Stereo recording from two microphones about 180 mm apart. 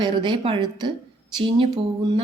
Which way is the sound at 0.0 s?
25° right (ahead or behind).